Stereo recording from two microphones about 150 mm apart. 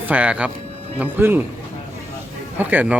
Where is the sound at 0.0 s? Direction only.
10° right (ahead or behind).